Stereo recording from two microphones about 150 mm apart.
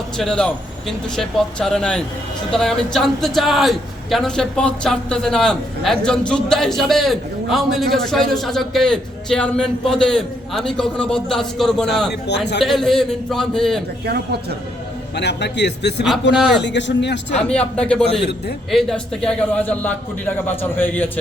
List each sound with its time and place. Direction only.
0.2 s a man's voice: 5° left (ahead or behind)
15.3 s a man's voice: 90° left
16.0 s a man's voice: centre (ahead or behind)